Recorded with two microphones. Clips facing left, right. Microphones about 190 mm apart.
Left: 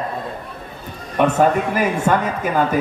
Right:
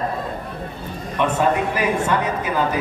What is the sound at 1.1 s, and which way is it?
A man's voice, 45° left (ahead or behind).